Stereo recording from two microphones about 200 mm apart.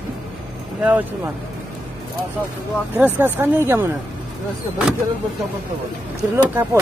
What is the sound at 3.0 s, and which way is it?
Speech, 10° right (ahead or behind).